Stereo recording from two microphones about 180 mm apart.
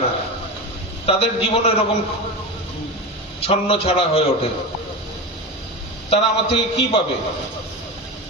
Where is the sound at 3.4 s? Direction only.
35° left (ahead or behind).